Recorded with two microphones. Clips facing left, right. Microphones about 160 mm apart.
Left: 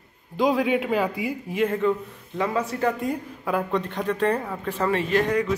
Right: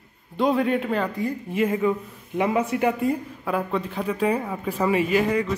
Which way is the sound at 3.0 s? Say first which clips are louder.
Right 3 dB; centre (ahead or behind).